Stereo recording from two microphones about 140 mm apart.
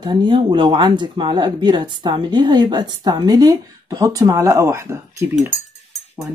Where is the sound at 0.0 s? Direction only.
35° right (ahead or behind).